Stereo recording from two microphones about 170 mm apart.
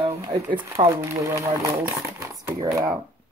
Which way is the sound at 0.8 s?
35° right (ahead or behind).